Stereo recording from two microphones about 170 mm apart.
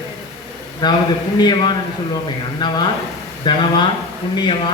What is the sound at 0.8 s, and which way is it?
Speech, 25° left (ahead or behind).